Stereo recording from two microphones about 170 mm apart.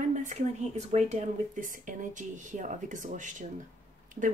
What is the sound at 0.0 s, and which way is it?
A woman's voice, 45° right (ahead or behind).